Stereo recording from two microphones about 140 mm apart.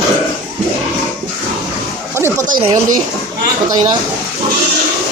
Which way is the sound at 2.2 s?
15° right (ahead or behind).